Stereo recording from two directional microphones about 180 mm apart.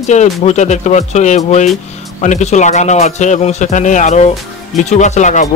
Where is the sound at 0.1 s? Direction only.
40° left (ahead or behind).